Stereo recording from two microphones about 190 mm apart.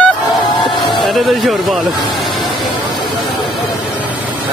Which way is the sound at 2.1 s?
25° left (ahead or behind).